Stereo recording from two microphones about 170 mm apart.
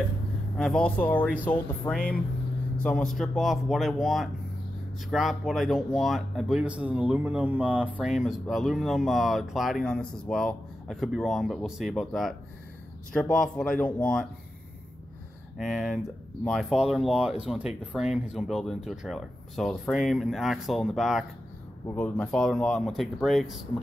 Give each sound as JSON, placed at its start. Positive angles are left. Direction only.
{"t": 0.6, "sound": "speech", "side_deg": 5}
{"t": 15.5, "sound": "speech", "side_deg": 0}